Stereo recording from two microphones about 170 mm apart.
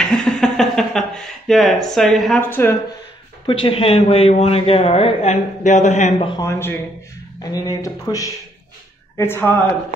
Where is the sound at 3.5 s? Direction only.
30° left (ahead or behind).